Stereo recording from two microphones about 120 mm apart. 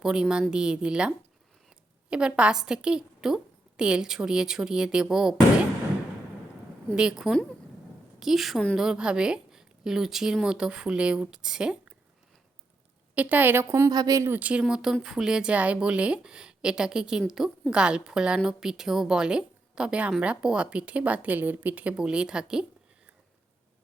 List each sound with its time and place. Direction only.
0.0 s a woman's voice: 5° right (ahead or behind)
6.9 s a woman's voice: 5° right (ahead or behind)
13.1 s a woman's voice: 15° right (ahead or behind); by 14.3 s 30° right (ahead or behind)
14.3 s a woman's voice: 10° right (ahead or behind)